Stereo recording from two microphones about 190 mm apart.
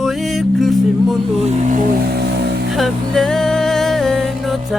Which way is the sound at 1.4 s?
40° right (ahead or behind).